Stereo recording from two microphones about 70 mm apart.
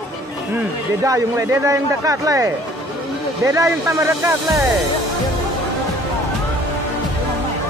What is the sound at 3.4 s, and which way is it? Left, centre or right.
Speech, right.